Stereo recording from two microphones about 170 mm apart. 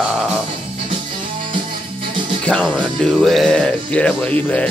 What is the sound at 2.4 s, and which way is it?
Speech, 5° left (ahead or behind).